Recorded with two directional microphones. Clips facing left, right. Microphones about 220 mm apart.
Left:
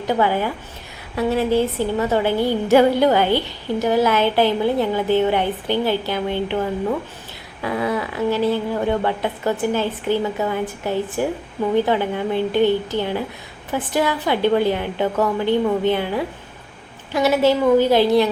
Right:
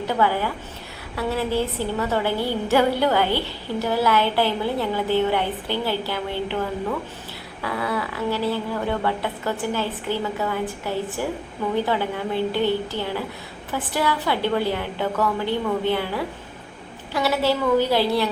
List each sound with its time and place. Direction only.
0.0 s a woman's voice: 20° left (ahead or behind)
7.6 s speech: 20° left (ahead or behind)